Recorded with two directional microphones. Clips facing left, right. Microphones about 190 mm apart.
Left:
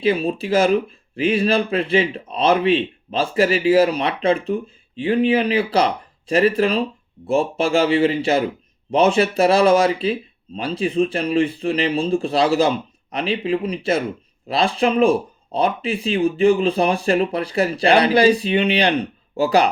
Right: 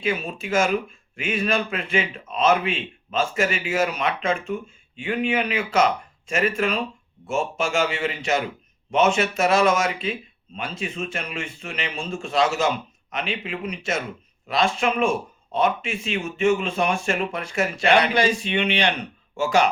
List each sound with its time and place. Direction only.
0.0 s speech: 35° left (ahead or behind)